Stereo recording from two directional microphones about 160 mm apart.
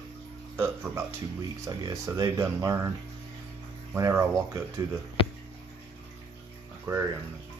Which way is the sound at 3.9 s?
15° right (ahead or behind).